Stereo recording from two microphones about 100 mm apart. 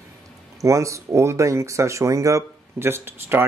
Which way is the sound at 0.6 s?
30° right (ahead or behind).